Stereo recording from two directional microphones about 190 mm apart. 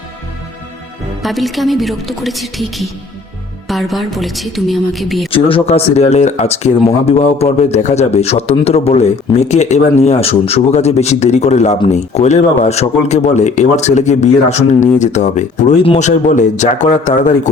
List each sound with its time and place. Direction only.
1.2 s a woman's voice: centre (ahead or behind)
5.3 s speech: 30° left (ahead or behind)